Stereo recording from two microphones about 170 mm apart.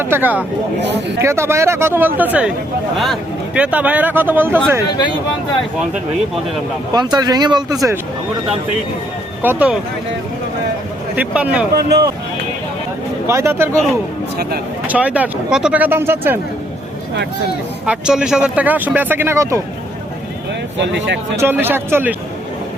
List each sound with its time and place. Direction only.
0.0 s speech: 10° right (ahead or behind)
6.9 s speech: 25° right (ahead or behind)
9.4 s speech: 10° right (ahead or behind)
11.1 s speech: 10° right (ahead or behind)
11.7 s speech: 70° right (ahead or behind)
13.2 s speech: 15° right (ahead or behind)
14.8 s speech: 10° right (ahead or behind)
17.8 s speech: 5° right (ahead or behind)
20.8 s speech: 90° right
21.3 s speech: 10° right (ahead or behind)